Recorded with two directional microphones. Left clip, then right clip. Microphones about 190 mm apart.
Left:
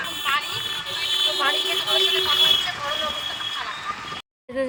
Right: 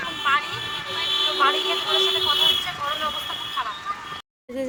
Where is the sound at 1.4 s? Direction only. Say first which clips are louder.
Right 1 dB; centre (ahead or behind).